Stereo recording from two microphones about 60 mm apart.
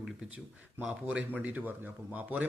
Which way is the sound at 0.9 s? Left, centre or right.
Right.